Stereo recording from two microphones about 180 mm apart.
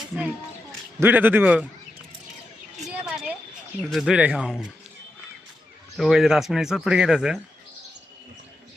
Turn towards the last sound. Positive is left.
turn(degrees=-5)  # may be behind; listen again after turning